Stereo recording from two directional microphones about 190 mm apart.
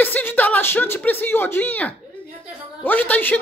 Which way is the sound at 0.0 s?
10° left (ahead or behind).